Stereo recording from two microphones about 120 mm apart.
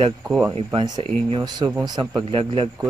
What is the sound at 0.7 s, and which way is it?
Speech, 35° right (ahead or behind).